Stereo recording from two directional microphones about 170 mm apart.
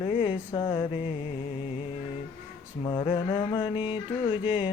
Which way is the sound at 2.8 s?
30° left (ahead or behind).